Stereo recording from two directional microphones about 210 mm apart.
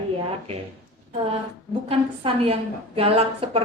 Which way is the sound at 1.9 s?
25° right (ahead or behind).